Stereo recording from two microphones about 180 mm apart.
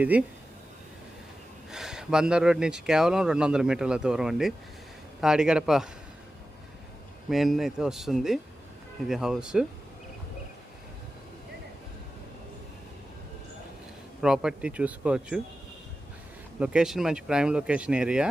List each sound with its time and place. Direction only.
0.0 s speech: 10° right (ahead or behind)
1.7 s speech: 5° right (ahead or behind)
7.3 s speech: centre (ahead or behind)
14.2 s speech: 5° right (ahead or behind)
16.6 s speech: 5° right (ahead or behind)